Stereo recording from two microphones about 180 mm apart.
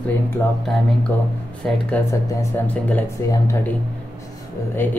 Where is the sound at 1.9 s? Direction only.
10° left (ahead or behind).